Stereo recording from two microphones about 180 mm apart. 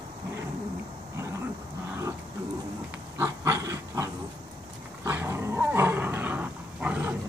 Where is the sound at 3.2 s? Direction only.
15° right (ahead or behind).